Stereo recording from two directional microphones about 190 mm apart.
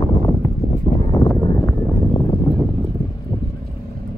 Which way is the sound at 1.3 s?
10° left (ahead or behind).